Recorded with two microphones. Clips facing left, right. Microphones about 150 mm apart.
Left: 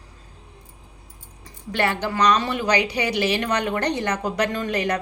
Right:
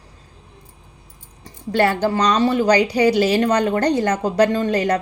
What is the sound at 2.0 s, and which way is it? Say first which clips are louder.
Speech: right 4 dB; 35° right (ahead or behind).